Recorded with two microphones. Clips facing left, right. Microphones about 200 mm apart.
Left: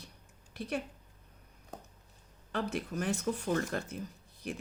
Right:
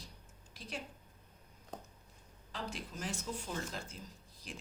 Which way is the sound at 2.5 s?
60° left (ahead or behind).